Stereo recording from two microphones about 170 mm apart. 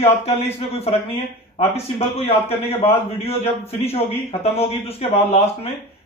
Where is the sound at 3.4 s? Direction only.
35° left (ahead or behind).